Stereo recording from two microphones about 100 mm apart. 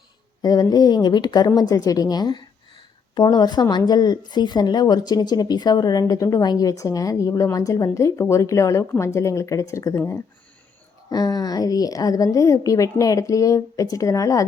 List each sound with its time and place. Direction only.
0.4 s a woman's voice: 40° left (ahead or behind)
11.1 s a woman's voice: 40° left (ahead or behind)